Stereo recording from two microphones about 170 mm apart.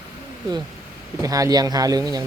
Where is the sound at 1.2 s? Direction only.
20° right (ahead or behind).